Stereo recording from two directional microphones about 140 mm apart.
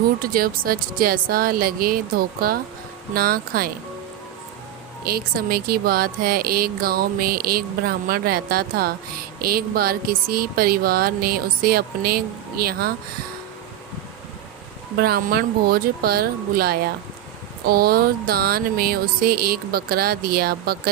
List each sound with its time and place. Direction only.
0.2 s speech: 90° right
5.0 s speech: 90° right
14.9 s speech: 90° right